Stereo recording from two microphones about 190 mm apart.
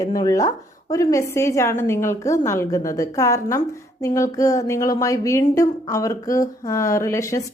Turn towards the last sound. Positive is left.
turn(degrees=15)  # may be behind; listen again after turning